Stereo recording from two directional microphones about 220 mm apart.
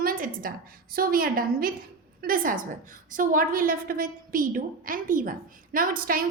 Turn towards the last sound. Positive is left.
turn(degrees=-40)  # may be behind; listen again after turning